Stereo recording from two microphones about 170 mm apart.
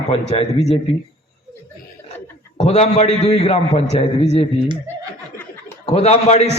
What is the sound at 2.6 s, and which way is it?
A man's voice, 40° left (ahead or behind).